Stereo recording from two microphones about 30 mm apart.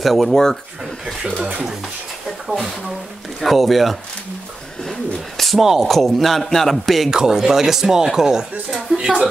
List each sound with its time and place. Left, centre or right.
0.0 s a man's voice: centre
0.3 s speech: centre
2.4 s a man's voice: centre
5.4 s a sound: centre
5.8 s a man's voice: centre
7.1 s speech: centre
8.6 s speech: right